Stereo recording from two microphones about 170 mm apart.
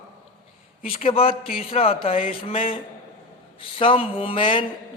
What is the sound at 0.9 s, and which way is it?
A man's voice, 35° left (ahead or behind).